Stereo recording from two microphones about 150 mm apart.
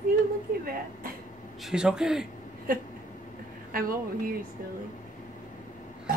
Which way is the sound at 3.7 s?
70° right (ahead or behind).